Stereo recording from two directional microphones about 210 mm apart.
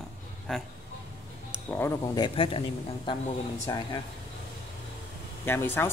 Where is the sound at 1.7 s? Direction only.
15° left (ahead or behind).